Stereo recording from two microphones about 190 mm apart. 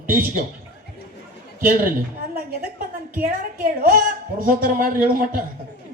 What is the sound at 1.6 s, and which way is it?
Speech, 50° right (ahead or behind).